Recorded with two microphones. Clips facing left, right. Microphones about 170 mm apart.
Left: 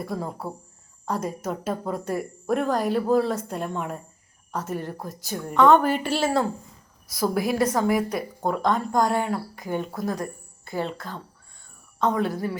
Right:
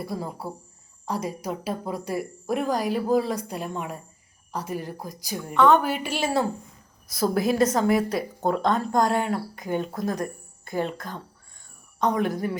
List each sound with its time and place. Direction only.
0.0 s a woman's voice: 5° right (ahead or behind)
7.3 s speech: 20° right (ahead or behind)
11.9 s a woman's voice: 15° right (ahead or behind)